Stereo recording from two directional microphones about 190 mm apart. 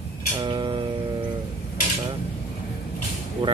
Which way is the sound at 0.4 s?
25° right (ahead or behind).